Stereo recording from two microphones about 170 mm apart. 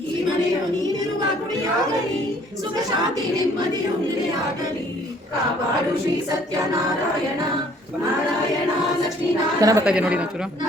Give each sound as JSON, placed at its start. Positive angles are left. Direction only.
{"t": 9.6, "sound": "a woman's voice", "side_deg": -20}
{"t": 9.8, "sound": "speech", "side_deg": -5}